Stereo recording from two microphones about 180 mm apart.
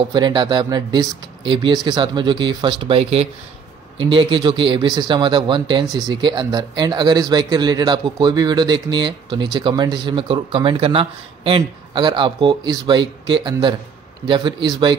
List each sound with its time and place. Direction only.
0.1 s speech: 25° right (ahead or behind)